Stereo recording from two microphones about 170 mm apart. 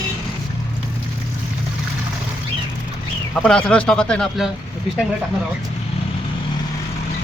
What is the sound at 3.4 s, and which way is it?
Speech, 5° left (ahead or behind).